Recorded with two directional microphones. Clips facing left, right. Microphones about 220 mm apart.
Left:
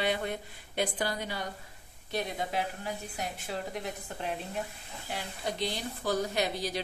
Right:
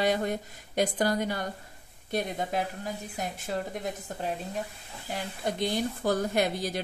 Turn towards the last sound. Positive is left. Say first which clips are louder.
# right 4 dB
turn(degrees=-50)  # may be behind; listen again after turning